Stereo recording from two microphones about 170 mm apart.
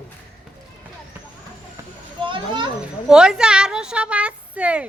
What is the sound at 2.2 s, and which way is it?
Speech, 30° right (ahead or behind).